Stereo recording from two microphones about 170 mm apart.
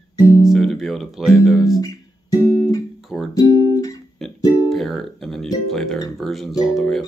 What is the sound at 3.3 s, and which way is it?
Speech, 20° left (ahead or behind).